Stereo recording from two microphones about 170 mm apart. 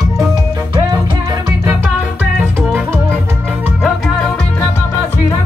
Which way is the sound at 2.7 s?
10° right (ahead or behind).